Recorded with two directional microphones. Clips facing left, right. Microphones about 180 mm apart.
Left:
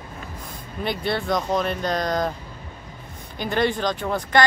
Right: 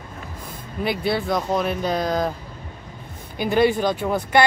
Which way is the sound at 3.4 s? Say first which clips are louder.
Right 4 dB; 10° right (ahead or behind).